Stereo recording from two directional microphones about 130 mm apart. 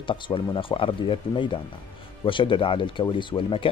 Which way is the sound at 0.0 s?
40° left (ahead or behind).